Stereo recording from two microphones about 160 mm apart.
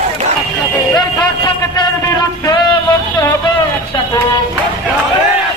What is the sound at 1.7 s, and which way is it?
Music, 25° left (ahead or behind).